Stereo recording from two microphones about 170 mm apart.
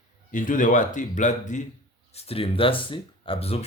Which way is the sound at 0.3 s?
50° left (ahead or behind).